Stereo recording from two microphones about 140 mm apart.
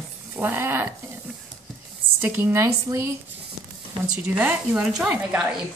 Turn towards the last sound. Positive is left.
turn(degrees=-5)  # may be behind; listen again after turning